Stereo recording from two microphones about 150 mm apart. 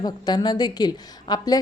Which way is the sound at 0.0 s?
30° left (ahead or behind).